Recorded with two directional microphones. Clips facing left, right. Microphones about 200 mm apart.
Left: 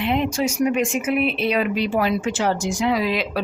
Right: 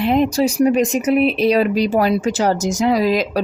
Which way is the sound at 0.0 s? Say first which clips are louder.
Right 6 dB; 40° right (ahead or behind).